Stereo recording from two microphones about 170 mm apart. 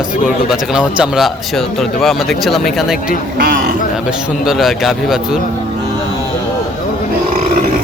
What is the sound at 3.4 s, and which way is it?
Speech, 60° right (ahead or behind).